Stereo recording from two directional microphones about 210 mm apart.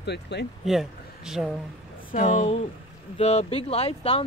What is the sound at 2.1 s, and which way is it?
Speech, 35° left (ahead or behind).